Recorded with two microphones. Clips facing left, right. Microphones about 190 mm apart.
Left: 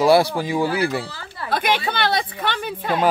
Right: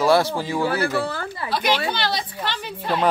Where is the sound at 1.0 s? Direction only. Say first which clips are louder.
Right 9 dB; 55° right (ahead or behind).